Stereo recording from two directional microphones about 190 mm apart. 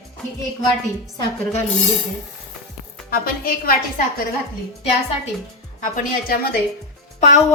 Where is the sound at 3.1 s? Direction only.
50° left (ahead or behind).